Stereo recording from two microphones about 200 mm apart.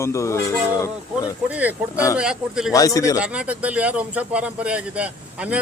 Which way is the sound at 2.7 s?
15° left (ahead or behind).